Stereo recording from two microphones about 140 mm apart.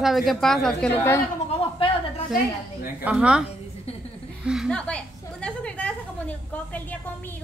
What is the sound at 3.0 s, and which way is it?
Speech, 5° right (ahead or behind).